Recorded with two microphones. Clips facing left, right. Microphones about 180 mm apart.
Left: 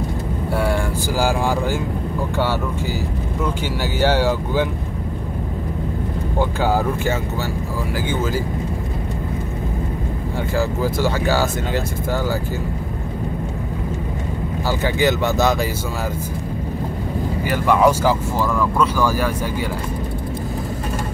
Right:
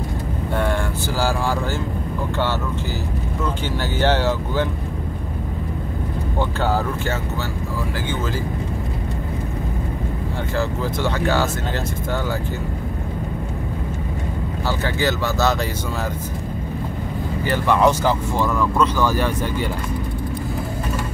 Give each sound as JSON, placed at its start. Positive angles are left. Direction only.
{"t": 0.6, "sound": "speech", "side_deg": 10}
{"t": 4.0, "sound": "speech", "side_deg": 10}
{"t": 6.6, "sound": "speech", "side_deg": 10}
{"t": 10.6, "sound": "speech", "side_deg": 5}
{"t": 14.8, "sound": "speech", "side_deg": 15}
{"t": 17.5, "sound": "speech", "side_deg": 10}